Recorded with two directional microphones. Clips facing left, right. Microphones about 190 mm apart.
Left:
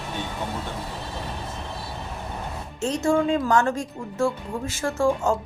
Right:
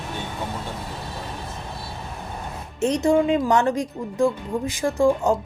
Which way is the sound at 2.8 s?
20° right (ahead or behind).